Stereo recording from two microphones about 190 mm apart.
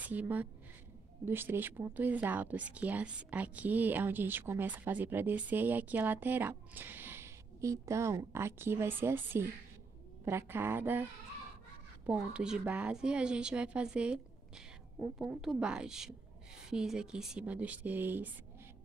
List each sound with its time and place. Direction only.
0.0 s a woman's voice: 10° right (ahead or behind)
12.1 s a woman's voice: 5° right (ahead or behind)